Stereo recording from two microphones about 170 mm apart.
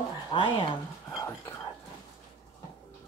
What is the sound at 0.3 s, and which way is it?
Speech, 30° left (ahead or behind).